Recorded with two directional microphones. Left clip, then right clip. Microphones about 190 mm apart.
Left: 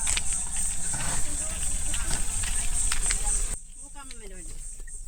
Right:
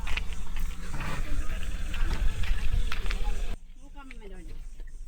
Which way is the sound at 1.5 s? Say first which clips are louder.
Left 7 dB; 55° left (ahead or behind).